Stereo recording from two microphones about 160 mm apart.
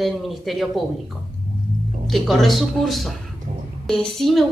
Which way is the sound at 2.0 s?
Centre (ahead or behind).